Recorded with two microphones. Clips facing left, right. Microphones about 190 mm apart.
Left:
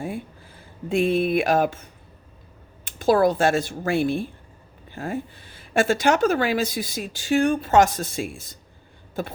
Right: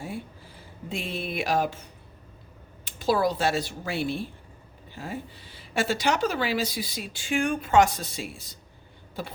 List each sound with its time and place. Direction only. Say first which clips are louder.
0.9 s speech: left 12 dB; 55° left (ahead or behind)
2.8 s speech: left 6 dB; 50° left (ahead or behind)